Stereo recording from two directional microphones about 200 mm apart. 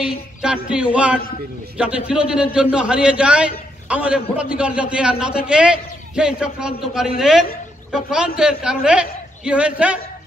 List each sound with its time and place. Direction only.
0.0 s a man's voice: 5° right (ahead or behind)